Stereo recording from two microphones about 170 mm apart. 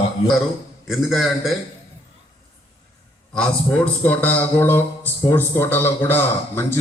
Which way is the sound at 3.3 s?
5° left (ahead or behind).